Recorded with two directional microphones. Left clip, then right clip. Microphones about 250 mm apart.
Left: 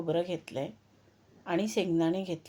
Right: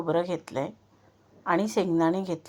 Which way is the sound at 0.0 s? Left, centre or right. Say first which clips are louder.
Right 4 dB; centre.